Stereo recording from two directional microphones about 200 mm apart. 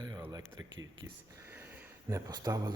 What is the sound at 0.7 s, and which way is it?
Speech, 70° right (ahead or behind).